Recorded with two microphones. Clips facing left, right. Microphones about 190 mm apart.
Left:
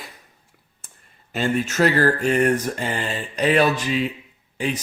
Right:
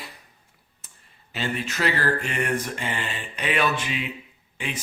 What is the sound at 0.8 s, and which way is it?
Speech, 45° left (ahead or behind).